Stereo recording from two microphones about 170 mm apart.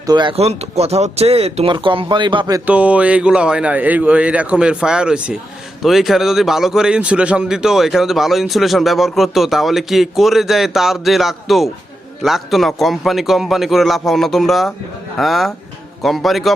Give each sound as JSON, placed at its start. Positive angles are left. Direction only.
{"t": 0.0, "sound": "speech", "side_deg": -25}
{"t": 2.6, "sound": "speech", "side_deg": -10}